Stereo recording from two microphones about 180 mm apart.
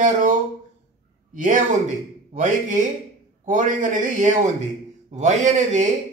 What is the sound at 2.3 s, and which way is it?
A man's voice, 45° right (ahead or behind).